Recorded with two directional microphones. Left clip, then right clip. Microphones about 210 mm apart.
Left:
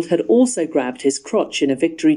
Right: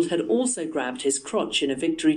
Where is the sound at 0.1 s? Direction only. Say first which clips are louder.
Left 8 dB; 20° left (ahead or behind).